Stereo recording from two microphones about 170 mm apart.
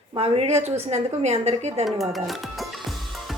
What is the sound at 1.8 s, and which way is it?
Music, centre (ahead or behind).